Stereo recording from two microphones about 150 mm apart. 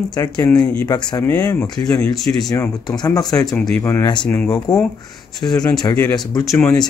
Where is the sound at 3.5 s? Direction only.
5° left (ahead or behind).